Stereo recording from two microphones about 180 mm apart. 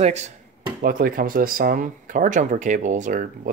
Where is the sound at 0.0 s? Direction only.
40° right (ahead or behind).